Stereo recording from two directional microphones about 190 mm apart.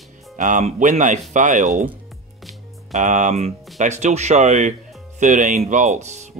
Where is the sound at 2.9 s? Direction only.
40° right (ahead or behind).